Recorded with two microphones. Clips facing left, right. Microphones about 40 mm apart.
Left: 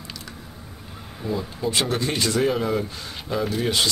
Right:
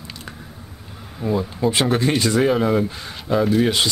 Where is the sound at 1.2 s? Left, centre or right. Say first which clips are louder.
Right 6 dB; centre.